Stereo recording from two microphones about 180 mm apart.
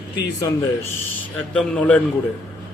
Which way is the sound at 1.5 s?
5° left (ahead or behind).